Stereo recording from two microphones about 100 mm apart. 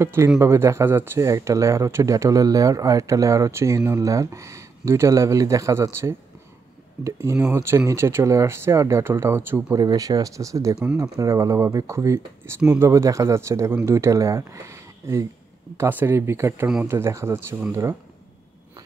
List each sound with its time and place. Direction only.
0.0 s speech: 30° right (ahead or behind)
9.8 s speech: 40° right (ahead or behind)